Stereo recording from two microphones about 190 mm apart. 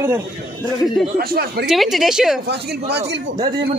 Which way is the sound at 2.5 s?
60° right (ahead or behind).